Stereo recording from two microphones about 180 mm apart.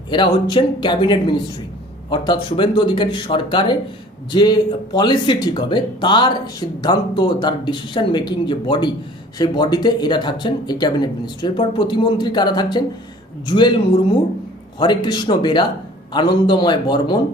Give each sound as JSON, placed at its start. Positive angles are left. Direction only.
{"t": 0.1, "sound": "speech", "side_deg": 25}